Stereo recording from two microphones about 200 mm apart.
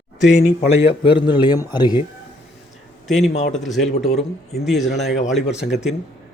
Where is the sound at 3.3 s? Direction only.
35° left (ahead or behind).